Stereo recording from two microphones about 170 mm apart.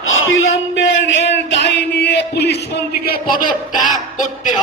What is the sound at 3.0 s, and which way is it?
Speech, 60° left (ahead or behind).